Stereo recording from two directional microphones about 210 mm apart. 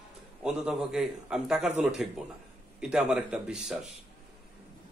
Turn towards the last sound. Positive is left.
turn(degrees=-5)  # may be behind; listen again after turning